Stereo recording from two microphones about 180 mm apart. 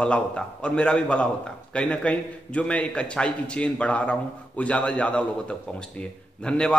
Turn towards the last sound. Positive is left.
turn(degrees=5)  # may be behind; listen again after turning